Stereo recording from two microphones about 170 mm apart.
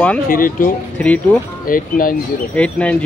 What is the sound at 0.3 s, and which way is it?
Speech, 55° left (ahead or behind).